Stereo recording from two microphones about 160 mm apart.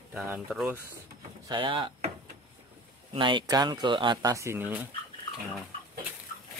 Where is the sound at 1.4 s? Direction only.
30° right (ahead or behind).